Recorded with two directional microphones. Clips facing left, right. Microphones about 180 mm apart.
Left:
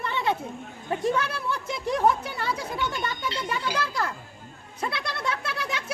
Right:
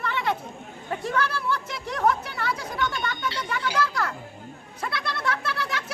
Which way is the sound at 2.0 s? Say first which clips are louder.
Right 2 dB; 25° left (ahead or behind).